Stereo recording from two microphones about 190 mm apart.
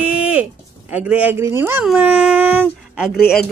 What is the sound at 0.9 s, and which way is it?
Speech, 10° right (ahead or behind).